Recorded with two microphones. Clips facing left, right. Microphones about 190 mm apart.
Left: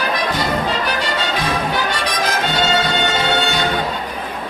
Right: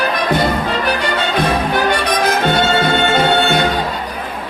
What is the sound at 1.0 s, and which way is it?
Music, 55° right (ahead or behind).